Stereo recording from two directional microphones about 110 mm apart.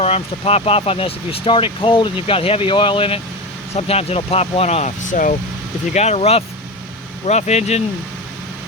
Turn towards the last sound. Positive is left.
turn(degrees=85)